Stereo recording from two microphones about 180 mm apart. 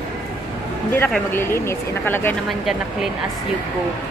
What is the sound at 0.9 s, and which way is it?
Speech, 10° left (ahead or behind).